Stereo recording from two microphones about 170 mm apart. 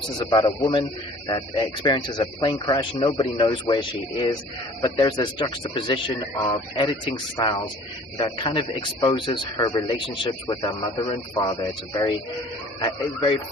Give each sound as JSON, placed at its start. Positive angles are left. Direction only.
{"t": 0.2, "sound": "speech", "side_deg": 25}